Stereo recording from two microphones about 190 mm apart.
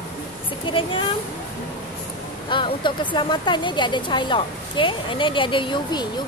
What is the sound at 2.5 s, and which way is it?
A woman's voice, 25° left (ahead or behind).